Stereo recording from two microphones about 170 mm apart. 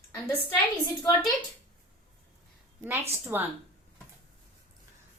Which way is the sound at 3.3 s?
10° right (ahead or behind).